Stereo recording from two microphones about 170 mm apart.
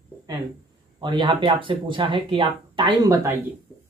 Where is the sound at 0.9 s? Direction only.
25° right (ahead or behind).